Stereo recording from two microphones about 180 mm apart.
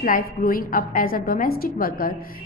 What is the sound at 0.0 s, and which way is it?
A woman's voice, 50° left (ahead or behind).